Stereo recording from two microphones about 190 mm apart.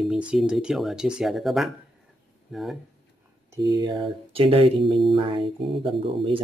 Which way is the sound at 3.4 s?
20° right (ahead or behind).